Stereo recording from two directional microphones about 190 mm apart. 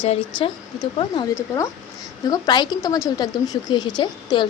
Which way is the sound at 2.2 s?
20° left (ahead or behind).